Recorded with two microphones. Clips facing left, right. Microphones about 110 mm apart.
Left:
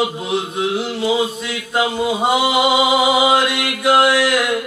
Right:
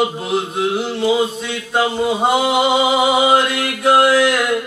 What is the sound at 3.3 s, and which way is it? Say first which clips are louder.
Mantra: right 1 dB; 35° right (ahead or behind).